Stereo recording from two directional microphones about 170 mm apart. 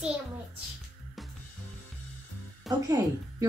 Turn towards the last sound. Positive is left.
turn(degrees=-20)  # may be behind; listen again after turning